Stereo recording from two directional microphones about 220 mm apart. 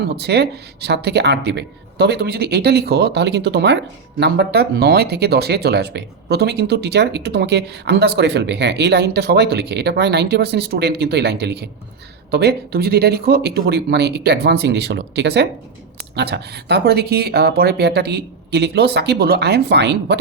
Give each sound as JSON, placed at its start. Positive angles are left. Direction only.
{"t": 0.2, "sound": "speech", "side_deg": -50}